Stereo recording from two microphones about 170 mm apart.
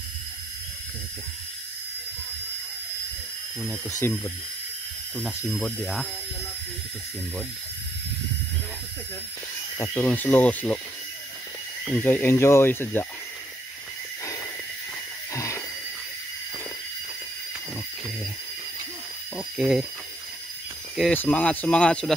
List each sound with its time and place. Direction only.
4.0 s speech: 15° left (ahead or behind)
9.8 s speech: 10° left (ahead or behind)
11.8 s speech: 10° left (ahead or behind)
15.3 s a sound: 15° left (ahead or behind)
19.3 s mechanisms: 5° right (ahead or behind)
21.1 s speech: 10° left (ahead or behind)